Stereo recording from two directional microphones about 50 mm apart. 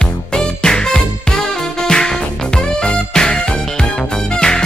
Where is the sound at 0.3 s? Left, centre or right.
Centre.